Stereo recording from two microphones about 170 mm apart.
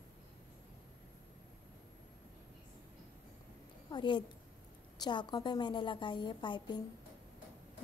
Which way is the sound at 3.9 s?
25° left (ahead or behind).